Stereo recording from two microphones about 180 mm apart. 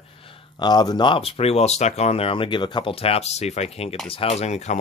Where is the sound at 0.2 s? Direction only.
25° left (ahead or behind).